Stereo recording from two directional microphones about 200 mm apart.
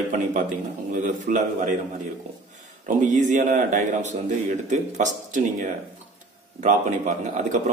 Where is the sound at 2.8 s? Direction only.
40° right (ahead or behind).